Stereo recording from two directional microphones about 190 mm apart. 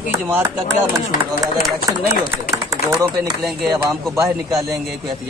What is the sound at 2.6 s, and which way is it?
Speech, 20° right (ahead or behind).